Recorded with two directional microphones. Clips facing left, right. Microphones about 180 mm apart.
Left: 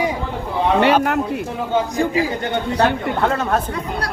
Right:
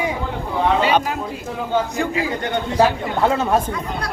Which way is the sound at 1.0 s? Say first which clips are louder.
Left 6 dB; 65° left (ahead or behind).